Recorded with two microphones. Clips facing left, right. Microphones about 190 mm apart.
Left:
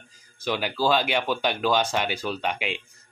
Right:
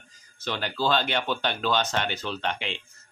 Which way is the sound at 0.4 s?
10° left (ahead or behind).